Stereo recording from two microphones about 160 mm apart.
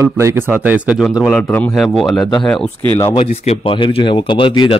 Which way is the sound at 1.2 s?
5° left (ahead or behind).